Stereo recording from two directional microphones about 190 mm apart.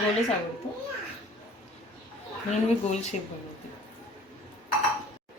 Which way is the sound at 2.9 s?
35° left (ahead or behind).